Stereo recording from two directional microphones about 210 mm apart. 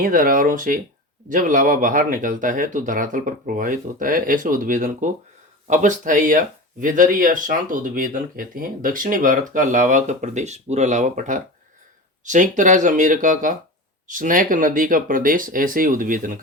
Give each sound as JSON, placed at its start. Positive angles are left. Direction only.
{"t": 0.0, "sound": "speech", "side_deg": -40}